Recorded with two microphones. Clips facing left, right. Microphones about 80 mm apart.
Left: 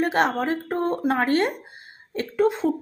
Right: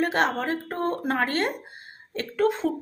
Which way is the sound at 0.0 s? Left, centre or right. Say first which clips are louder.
Left 2 dB; left.